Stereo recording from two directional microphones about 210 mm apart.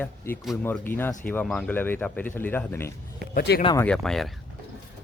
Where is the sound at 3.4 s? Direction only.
50° left (ahead or behind).